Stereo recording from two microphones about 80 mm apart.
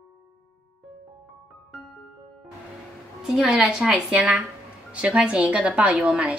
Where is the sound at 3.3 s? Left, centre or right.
Centre.